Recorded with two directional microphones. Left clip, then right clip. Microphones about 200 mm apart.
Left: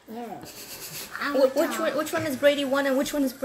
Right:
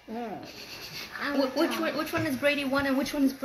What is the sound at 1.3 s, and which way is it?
Speech, 50° left (ahead or behind).